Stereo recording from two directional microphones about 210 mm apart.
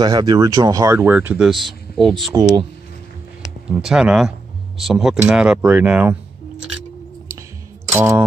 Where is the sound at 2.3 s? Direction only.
15° right (ahead or behind).